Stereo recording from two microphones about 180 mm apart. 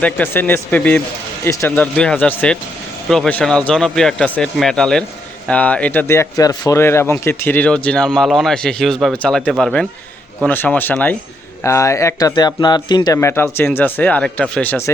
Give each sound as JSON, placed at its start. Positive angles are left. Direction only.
{"t": 0.0, "sound": "a man's voice", "side_deg": 10}
{"t": 13.1, "sound": "speech", "side_deg": 15}